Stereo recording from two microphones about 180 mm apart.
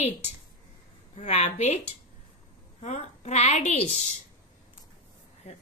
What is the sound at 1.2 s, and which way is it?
Speech, 40° left (ahead or behind).